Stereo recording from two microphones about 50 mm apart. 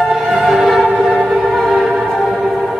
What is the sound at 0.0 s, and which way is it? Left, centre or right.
Music, centre.